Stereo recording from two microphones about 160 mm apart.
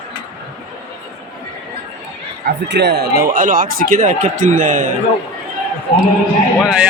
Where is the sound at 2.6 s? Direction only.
90° right; by 4.9 s 55° right (ahead or behind).